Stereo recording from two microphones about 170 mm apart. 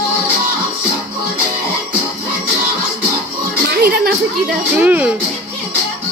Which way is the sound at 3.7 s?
65° right (ahead or behind).